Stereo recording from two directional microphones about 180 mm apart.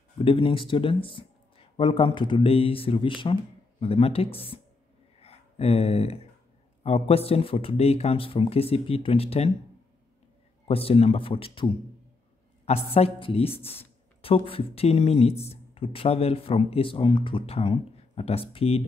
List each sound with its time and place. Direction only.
0.2 s speech: 30° left (ahead or behind)
10.7 s speech: 30° left (ahead or behind)